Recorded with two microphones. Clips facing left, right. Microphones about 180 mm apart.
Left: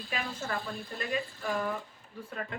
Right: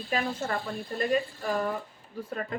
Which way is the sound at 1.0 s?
40° right (ahead or behind).